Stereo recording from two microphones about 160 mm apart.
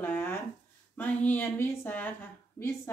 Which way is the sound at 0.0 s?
15° left (ahead or behind).